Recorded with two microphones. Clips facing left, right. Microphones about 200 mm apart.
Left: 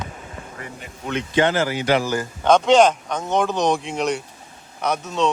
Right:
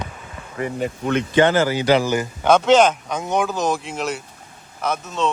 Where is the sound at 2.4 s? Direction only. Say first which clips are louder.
Even; 5° right (ahead or behind).